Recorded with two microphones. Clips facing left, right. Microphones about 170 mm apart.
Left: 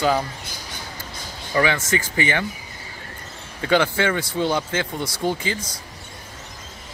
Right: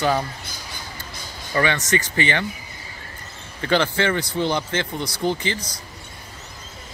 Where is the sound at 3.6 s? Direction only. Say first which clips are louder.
Left 1 dB; 10° left (ahead or behind).